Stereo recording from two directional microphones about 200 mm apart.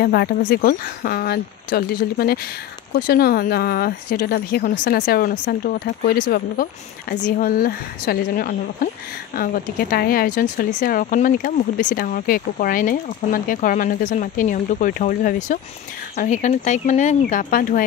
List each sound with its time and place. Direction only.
0.0 s speech: 50° left (ahead or behind)